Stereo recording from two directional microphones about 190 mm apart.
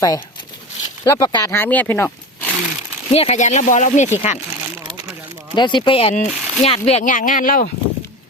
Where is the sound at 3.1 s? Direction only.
35° left (ahead or behind).